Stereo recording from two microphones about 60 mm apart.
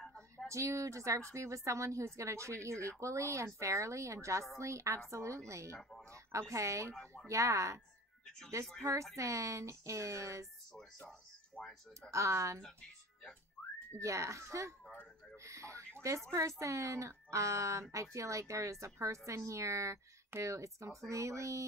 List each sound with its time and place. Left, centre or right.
0.0 s a sound: centre
0.5 s a woman's voice: right
5.8 s speech: centre
6.5 s a woman's voice: right
9.1 s a woman's voice: right
11.0 s speech: centre
12.1 s a woman's voice: right
13.6 s whistling: centre
13.9 s a woman's voice: right
15.4 s a sound: right
16.0 s a woman's voice: right